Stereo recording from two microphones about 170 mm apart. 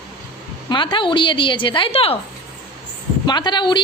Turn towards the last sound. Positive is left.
turn(degrees=25)  # may be behind; listen again after turning